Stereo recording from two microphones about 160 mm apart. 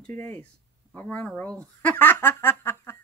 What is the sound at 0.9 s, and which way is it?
Speech, 10° left (ahead or behind).